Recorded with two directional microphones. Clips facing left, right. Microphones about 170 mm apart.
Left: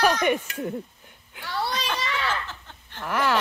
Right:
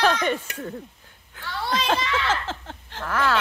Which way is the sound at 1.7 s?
90° right.